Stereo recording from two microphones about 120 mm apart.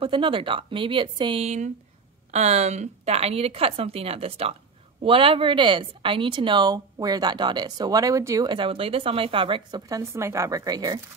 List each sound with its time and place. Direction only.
0.0 s speech: 45° right (ahead or behind)
1.4 s a woman's voice: 70° right (ahead or behind); by 8.5 s 25° right (ahead or behind)
8.5 s speech: 45° right (ahead or behind)
9.8 s speech: 30° right (ahead or behind)